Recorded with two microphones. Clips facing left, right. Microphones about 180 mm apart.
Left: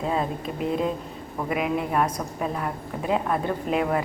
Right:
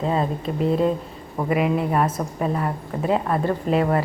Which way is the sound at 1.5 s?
Centre (ahead or behind).